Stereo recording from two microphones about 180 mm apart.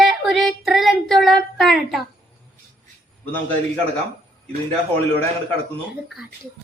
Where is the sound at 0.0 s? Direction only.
Centre (ahead or behind).